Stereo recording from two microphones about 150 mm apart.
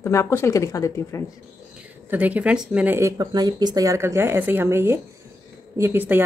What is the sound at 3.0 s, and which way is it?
Speech, 25° right (ahead or behind).